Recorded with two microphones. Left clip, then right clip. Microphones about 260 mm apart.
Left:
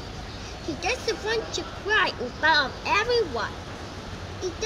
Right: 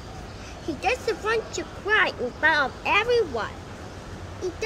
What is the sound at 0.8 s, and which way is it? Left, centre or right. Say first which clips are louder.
Speech: right 2 dB; centre.